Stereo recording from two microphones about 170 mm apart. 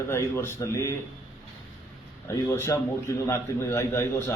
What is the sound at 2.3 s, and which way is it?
A man's voice, 15° left (ahead or behind).